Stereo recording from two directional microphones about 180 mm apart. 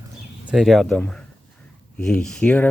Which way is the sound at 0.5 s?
Centre (ahead or behind).